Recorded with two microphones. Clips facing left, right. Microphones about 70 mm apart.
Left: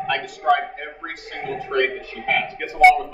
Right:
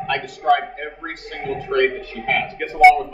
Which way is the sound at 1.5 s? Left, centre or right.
Centre.